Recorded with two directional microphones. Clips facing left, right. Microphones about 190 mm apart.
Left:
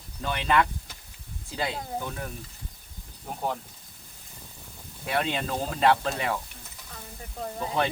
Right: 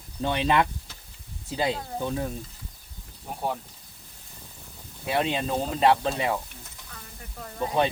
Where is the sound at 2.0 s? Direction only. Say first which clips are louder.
Right 6 dB; 25° right (ahead or behind).